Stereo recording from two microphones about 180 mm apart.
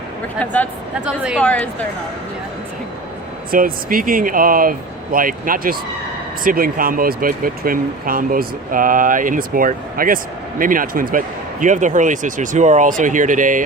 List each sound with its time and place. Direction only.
0.3 s speech: 10° left (ahead or behind)
1.0 s a woman's voice: 5° right (ahead or behind)
1.4 s speech: 5° left (ahead or behind)
3.5 s speech: 50° right (ahead or behind)